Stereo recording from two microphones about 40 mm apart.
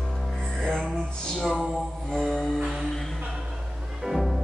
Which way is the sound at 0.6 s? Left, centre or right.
Centre.